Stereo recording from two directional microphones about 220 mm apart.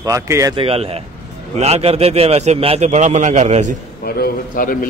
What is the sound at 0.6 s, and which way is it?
A man's voice, 25° right (ahead or behind).